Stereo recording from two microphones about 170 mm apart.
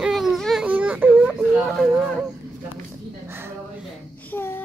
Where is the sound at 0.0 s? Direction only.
Centre (ahead or behind).